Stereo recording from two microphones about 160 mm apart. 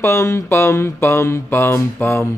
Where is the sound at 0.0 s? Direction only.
15° left (ahead or behind).